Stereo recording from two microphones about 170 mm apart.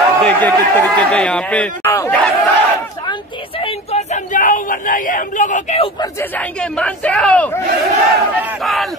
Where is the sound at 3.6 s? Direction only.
40° left (ahead or behind).